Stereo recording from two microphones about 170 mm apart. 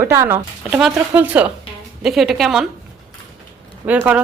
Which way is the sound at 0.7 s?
5° right (ahead or behind).